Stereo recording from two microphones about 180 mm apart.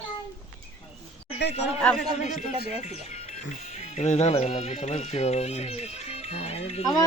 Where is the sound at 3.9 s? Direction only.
40° left (ahead or behind).